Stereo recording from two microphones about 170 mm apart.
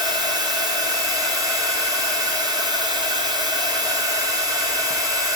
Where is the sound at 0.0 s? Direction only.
25° right (ahead or behind).